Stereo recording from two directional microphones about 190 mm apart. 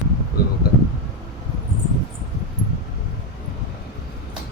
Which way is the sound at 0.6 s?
50° left (ahead or behind).